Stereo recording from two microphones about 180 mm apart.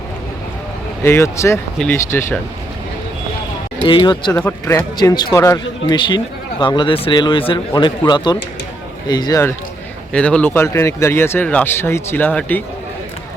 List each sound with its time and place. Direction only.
1.0 s speech: 15° left (ahead or behind)
3.8 s speech: 25° left (ahead or behind)
4.3 s speech: 10° left (ahead or behind)